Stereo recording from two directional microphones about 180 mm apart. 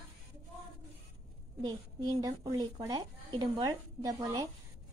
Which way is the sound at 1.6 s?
25° right (ahead or behind).